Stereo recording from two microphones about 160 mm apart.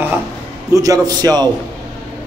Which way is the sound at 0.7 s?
20° right (ahead or behind).